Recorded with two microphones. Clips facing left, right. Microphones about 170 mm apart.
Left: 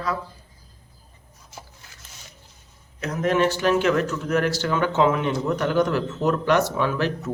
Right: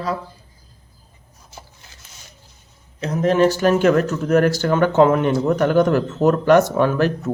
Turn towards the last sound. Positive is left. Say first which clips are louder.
# right 6 dB
turn(degrees=-45)  # may be behind; listen again after turning